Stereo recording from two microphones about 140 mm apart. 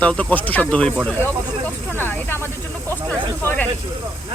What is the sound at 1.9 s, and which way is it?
Speech, 15° left (ahead or behind).